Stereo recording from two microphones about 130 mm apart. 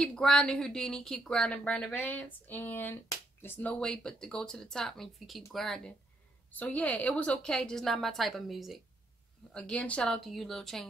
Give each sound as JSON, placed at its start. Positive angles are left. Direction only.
{"t": 0.0, "sound": "speech", "side_deg": 5}
{"t": 3.8, "sound": "speech", "side_deg": 5}